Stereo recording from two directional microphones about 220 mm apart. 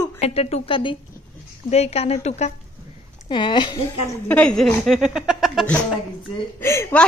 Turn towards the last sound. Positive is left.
turn(degrees=10)  # may be behind; listen again after turning